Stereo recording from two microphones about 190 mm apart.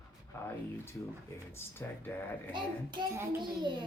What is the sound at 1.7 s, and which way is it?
Speech, 10° left (ahead or behind).